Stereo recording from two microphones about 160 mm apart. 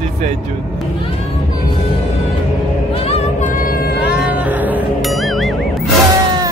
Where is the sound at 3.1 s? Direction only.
50° left (ahead or behind).